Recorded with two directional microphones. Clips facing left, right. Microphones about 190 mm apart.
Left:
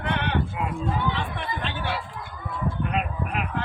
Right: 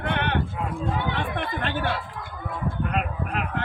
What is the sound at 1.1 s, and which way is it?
Chatter, 55° right (ahead or behind).